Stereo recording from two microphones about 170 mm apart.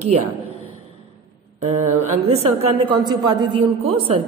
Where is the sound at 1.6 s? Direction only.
40° right (ahead or behind).